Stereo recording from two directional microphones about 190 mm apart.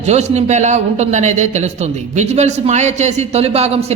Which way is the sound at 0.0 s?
35° right (ahead or behind).